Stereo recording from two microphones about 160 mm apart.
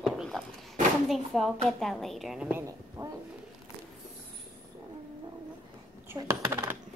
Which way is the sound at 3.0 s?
25° right (ahead or behind).